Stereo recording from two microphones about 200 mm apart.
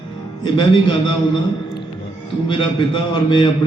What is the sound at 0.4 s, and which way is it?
Speech, 25° left (ahead or behind).